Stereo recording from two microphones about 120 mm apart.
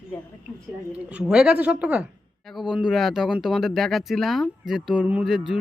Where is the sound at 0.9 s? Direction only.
10° right (ahead or behind).